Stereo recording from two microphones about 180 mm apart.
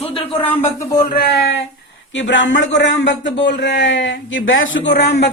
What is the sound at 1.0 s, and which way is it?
Speech, 60° left (ahead or behind).